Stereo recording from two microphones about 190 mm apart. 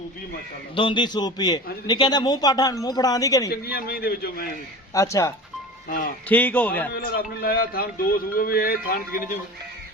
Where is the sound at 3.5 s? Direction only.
55° left (ahead or behind).